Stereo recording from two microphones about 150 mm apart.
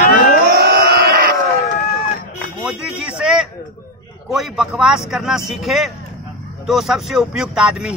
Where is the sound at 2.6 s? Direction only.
5° right (ahead or behind).